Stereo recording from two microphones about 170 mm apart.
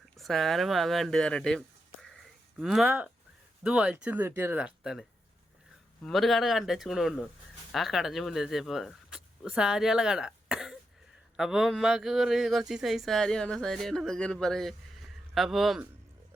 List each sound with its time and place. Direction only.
0.2 s speech: centre (ahead or behind)